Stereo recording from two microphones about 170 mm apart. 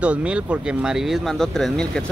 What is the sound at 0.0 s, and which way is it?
Speech, 5° right (ahead or behind).